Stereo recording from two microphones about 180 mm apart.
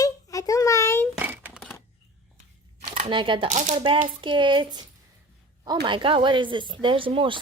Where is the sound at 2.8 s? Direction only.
35° right (ahead or behind).